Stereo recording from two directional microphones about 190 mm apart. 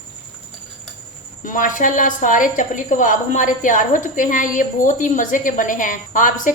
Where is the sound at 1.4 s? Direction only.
45° left (ahead or behind).